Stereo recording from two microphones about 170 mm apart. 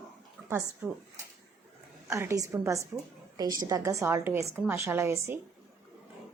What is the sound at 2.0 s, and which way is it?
A woman's voice, 15° right (ahead or behind).